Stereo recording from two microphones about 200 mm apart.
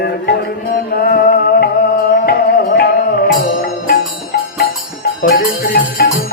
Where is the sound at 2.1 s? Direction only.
50° left (ahead or behind).